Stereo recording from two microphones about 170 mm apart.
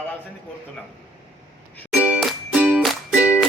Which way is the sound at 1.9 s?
5° right (ahead or behind).